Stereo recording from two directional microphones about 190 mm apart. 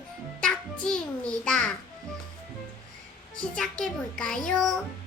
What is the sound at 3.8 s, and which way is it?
Child singing, 5° left (ahead or behind).